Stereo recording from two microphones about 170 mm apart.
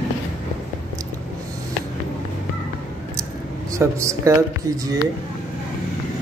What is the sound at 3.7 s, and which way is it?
Speech, 15° right (ahead or behind).